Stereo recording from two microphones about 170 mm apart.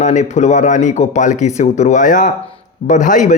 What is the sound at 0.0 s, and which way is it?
A man's voice, 45° left (ahead or behind).